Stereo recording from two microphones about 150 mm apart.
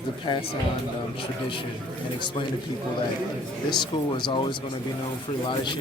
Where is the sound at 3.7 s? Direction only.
30° left (ahead or behind).